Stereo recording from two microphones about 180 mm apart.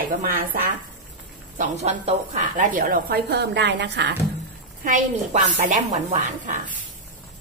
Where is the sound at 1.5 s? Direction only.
35° right (ahead or behind); by 4.1 s 70° right (ahead or behind).